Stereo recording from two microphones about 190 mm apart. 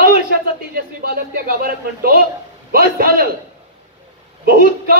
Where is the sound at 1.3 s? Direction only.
50° right (ahead or behind).